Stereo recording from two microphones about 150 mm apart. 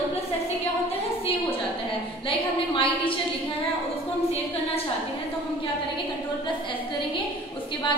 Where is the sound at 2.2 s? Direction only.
35° left (ahead or behind).